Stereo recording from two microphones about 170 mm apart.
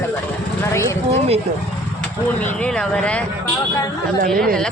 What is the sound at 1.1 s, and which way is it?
Speech, 35° right (ahead or behind).